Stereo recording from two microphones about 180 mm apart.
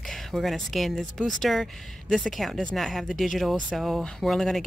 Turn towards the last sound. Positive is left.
turn(degrees=0)  # may be behind; listen again after turning